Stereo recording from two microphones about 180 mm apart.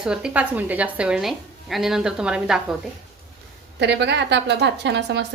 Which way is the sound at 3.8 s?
70° right (ahead or behind).